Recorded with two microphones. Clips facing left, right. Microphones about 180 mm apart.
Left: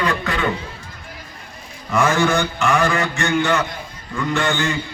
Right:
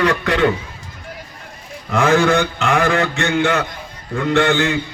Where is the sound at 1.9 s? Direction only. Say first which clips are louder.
Right 3 dB; 60° right (ahead or behind).